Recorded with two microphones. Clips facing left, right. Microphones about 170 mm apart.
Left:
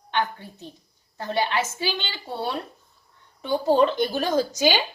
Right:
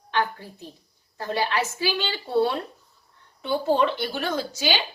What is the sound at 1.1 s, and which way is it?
Speech, 20° left (ahead or behind).